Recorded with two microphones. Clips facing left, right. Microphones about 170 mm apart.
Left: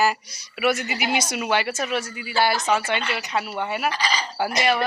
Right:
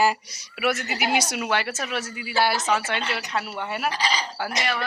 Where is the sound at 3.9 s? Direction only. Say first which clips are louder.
Left 1 dB; 30° right (ahead or behind).